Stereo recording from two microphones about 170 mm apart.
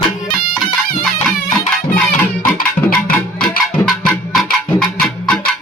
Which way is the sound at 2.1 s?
55° left (ahead or behind).